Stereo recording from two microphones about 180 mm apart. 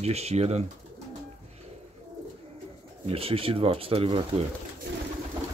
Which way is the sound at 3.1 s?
30° right (ahead or behind).